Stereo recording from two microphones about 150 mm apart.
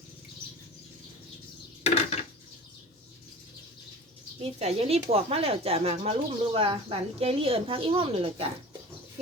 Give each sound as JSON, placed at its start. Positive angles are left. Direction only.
{"t": 1.8, "sound": "dishes", "side_deg": 45}
{"t": 4.6, "sound": "speech", "side_deg": -45}